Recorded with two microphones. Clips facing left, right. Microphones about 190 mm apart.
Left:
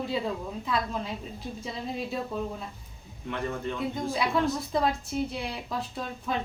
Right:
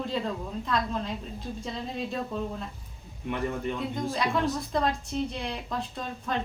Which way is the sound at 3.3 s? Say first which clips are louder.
Right 2 dB; 15° right (ahead or behind).